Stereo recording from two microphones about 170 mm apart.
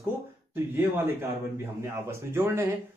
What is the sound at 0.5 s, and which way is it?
Speech, 15° right (ahead or behind).